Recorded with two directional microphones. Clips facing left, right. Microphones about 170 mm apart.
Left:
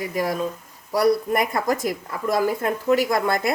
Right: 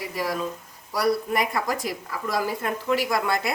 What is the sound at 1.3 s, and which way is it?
Speech, 50° left (ahead or behind).